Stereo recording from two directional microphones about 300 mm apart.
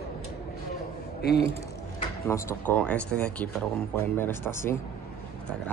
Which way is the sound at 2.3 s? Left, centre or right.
Centre.